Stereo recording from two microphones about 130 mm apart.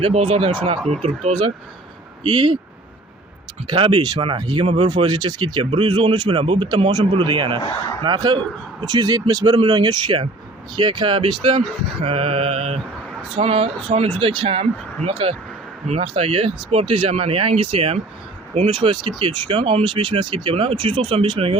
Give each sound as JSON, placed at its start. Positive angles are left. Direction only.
{"t": 0.0, "sound": "speech", "side_deg": -45}
{"t": 2.2, "sound": "speech", "side_deg": -40}
{"t": 3.7, "sound": "speech", "side_deg": -40}
{"t": 4.6, "sound": "speech", "side_deg": -50}
{"t": 4.9, "sound": "speech", "side_deg": -35}